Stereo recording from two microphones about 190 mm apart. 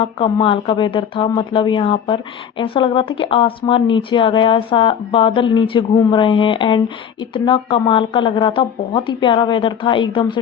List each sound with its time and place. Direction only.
0.0 s speech: 25° left (ahead or behind)